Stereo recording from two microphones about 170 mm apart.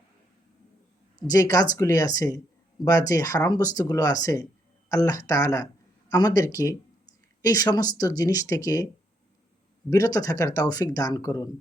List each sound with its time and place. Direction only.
1.3 s speech: 20° left (ahead or behind)
9.9 s speech: 20° left (ahead or behind)